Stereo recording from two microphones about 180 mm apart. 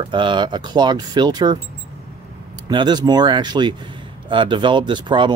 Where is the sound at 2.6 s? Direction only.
25° right (ahead or behind).